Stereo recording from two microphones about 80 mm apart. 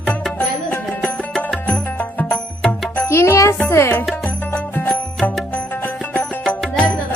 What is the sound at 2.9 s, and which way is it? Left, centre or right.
Music, left.